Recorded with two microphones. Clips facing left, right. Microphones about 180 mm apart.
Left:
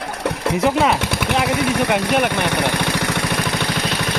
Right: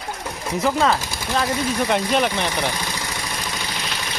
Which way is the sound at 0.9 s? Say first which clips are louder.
Left 4 dB; 70° left (ahead or behind).